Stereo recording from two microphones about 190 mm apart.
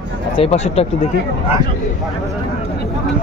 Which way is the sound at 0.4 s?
30° left (ahead or behind).